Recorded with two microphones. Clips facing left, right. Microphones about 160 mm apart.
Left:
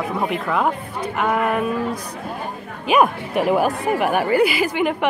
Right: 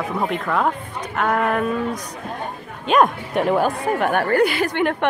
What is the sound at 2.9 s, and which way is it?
Speech, 5° left (ahead or behind).